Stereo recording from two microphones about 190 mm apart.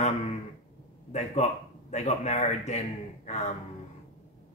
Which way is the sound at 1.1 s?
35° left (ahead or behind).